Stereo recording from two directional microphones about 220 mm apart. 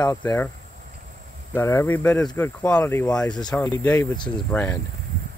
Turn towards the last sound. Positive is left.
turn(degrees=5)  # may be behind; listen again after turning